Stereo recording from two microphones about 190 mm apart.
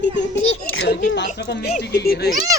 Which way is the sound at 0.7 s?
65° left (ahead or behind).